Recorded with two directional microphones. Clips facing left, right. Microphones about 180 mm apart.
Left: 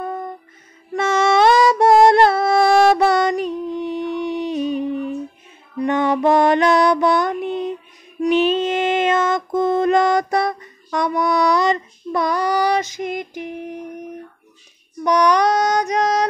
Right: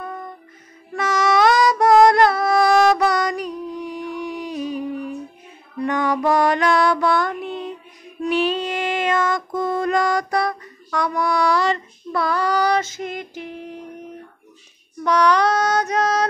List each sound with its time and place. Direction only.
0.9 s a sound: 25° left (ahead or behind)
5.8 s female singing: 25° left (ahead or behind)
15.0 s female singing: 15° left (ahead or behind)